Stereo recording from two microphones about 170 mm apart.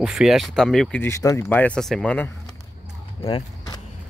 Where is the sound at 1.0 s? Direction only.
20° left (ahead or behind).